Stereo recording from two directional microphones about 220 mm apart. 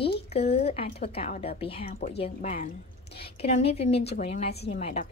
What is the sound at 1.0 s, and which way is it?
Speech, 30° left (ahead or behind).